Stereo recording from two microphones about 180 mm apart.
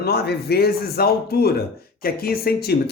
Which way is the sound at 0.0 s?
60° left (ahead or behind).